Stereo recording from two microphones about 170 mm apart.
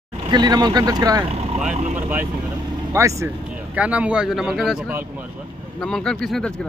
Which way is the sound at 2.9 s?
15° right (ahead or behind).